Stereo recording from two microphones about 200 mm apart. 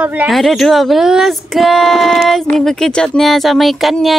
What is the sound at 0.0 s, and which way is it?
Speech, 10° right (ahead or behind).